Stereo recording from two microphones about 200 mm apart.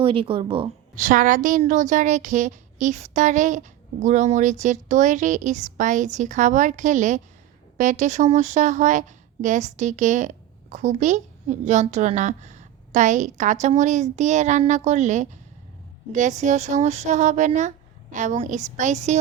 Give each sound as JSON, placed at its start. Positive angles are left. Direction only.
{"t": 0.0, "sound": "speech", "side_deg": -25}
{"t": 0.9, "sound": "a woman's voice", "side_deg": -40}